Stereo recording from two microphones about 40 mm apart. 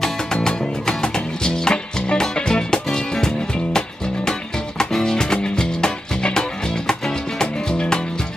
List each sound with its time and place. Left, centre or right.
0.0 s music: centre